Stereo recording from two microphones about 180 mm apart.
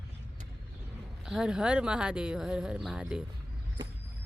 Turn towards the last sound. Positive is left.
turn(degrees=-5)  # may be behind; listen again after turning